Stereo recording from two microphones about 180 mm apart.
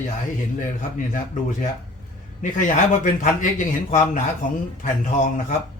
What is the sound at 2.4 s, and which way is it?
Speech, 45° left (ahead or behind).